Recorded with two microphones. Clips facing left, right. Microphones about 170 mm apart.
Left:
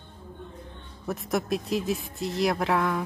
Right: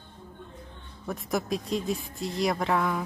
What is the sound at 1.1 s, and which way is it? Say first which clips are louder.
Speech: left 2 dB; centre (ahead or behind).